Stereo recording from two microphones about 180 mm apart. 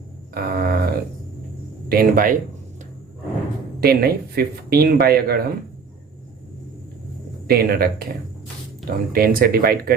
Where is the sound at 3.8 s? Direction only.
55° right (ahead or behind).